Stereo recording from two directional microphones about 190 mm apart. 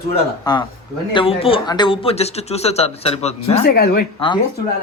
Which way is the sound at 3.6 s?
55° left (ahead or behind).